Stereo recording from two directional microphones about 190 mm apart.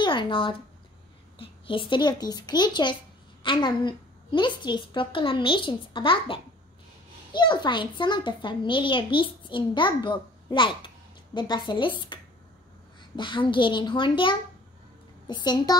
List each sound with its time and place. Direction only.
0.0 s a child's voice: 25° left (ahead or behind)